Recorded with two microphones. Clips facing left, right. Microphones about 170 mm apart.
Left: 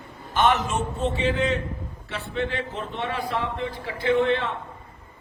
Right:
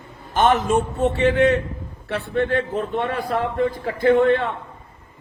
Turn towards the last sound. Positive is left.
turn(degrees=-50)  # may be behind; listen again after turning